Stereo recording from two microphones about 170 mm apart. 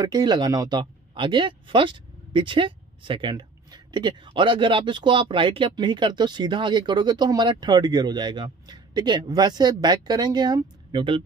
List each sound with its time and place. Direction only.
0.0 s speech: 25° right (ahead or behind)